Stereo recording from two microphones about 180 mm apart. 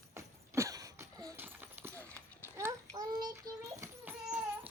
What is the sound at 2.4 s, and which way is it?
Child singing, 15° right (ahead or behind).